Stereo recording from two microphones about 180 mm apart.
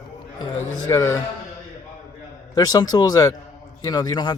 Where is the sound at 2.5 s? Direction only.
20° left (ahead or behind).